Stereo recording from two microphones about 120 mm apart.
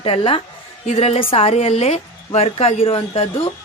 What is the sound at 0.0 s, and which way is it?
Speech, 50° left (ahead or behind).